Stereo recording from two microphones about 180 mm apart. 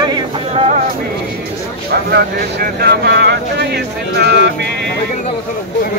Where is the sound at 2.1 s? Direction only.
60° right (ahead or behind).